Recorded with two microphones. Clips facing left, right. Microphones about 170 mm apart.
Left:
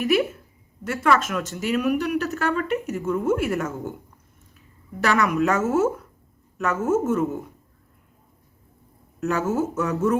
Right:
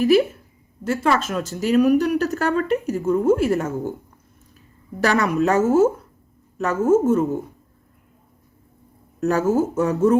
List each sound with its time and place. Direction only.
0.0 s speech: 30° right (ahead or behind)
9.2 s speech: 35° right (ahead or behind)